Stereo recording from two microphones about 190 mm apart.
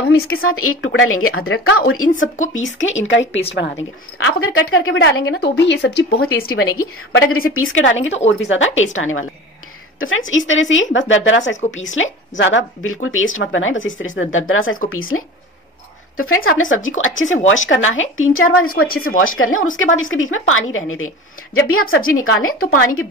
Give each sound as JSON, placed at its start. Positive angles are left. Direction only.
{"t": 0.1, "sound": "a woman's voice", "side_deg": 90}
{"t": 3.5, "sound": "a woman's voice", "side_deg": 75}
{"t": 7.1, "sound": "a woman's voice", "side_deg": 90}